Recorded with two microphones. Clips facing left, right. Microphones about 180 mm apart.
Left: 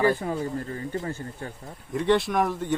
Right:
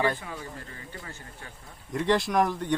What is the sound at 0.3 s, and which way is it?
Speech, 35° left (ahead or behind).